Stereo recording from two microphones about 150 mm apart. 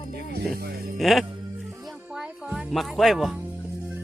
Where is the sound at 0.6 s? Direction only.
90° right.